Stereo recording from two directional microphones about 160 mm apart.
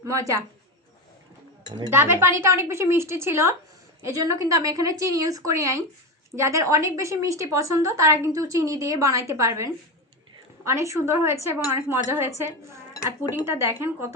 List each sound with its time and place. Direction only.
0.0 s a woman's voice: 20° right (ahead or behind)
1.9 s a woman's voice: 15° right (ahead or behind)
12.9 s cutlery: 20° left (ahead or behind)
13.3 s a woman's voice: 15° right (ahead or behind)